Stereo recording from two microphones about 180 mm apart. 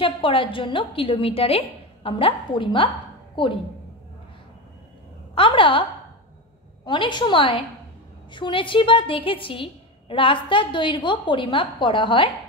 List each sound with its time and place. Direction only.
0.0 s a woman's voice: 30° left (ahead or behind)
5.3 s a sound: 30° left (ahead or behind)
6.9 s a woman's voice: 25° left (ahead or behind)